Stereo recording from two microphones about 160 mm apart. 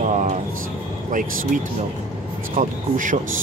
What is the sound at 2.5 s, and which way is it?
Speech, 55° right (ahead or behind).